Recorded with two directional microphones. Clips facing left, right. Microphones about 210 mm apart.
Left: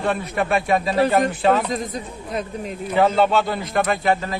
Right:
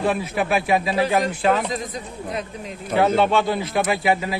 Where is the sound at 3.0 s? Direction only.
Centre (ahead or behind).